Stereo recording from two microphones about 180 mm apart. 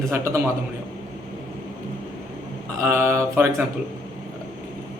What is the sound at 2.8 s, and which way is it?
Speech, 15° right (ahead or behind).